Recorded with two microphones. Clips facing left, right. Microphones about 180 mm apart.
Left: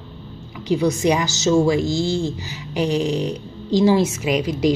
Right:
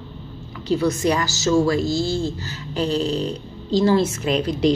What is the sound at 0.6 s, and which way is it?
A woman's voice, 15° left (ahead or behind).